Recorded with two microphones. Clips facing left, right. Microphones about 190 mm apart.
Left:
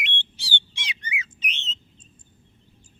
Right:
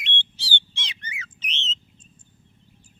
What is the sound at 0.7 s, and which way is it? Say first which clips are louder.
Bird: left 4 dB; 10° left (ahead or behind).